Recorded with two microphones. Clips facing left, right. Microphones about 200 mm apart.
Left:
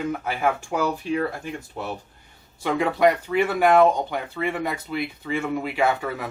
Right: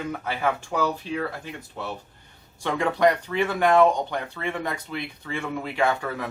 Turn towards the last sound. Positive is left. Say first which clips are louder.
# left 1 dB
turn(degrees=5)  # may be behind; listen again after turning